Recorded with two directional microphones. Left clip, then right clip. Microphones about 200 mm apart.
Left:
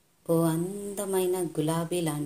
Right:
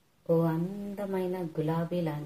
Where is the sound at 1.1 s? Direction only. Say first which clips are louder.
Left 6 dB; 45° left (ahead or behind).